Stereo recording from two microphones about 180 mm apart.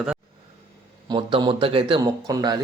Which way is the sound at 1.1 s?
25° right (ahead or behind).